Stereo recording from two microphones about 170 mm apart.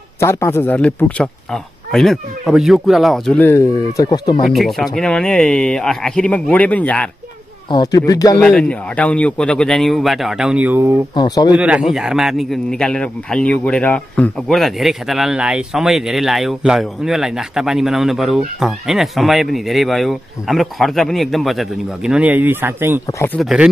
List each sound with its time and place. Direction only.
0.2 s a man's voice: 15° left (ahead or behind); by 3.3 s centre (ahead or behind)
3.3 s speech: 15° left (ahead or behind)
4.5 s a man's voice: centre (ahead or behind)
7.7 s speech: 25° left (ahead or behind)
8.4 s a man's voice: 5° left (ahead or behind); by 11.0 s 15° right (ahead or behind)
11.1 s speech: 25° left (ahead or behind)
11.5 s a man's voice: 5° right (ahead or behind)
23.0 s speech: 15° left (ahead or behind)
23.3 s a man's voice: 5° right (ahead or behind)